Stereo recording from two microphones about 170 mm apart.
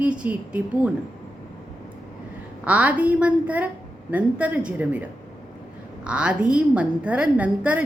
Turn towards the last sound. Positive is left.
turn(degrees=-10)  # may be behind; listen again after turning